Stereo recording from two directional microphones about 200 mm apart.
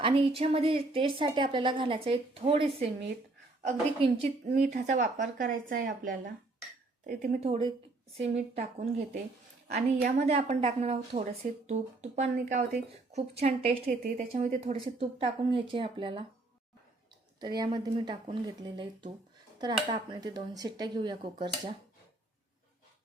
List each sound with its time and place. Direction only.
0.0 s a woman's voice: 25° right (ahead or behind)
17.6 s speech: 20° right (ahead or behind)